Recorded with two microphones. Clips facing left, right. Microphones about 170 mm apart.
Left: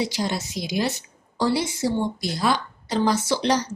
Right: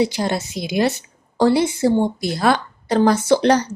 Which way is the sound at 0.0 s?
55° right (ahead or behind).